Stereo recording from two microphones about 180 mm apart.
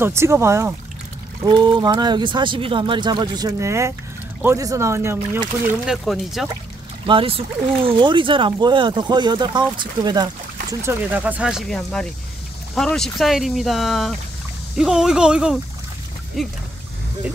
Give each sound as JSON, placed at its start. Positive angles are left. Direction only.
{"t": 0.0, "sound": "speech", "side_deg": -15}
{"t": 1.4, "sound": "speech", "side_deg": -25}
{"t": 5.7, "sound": "speech", "side_deg": 0}
{"t": 7.1, "sound": "speech", "side_deg": -30}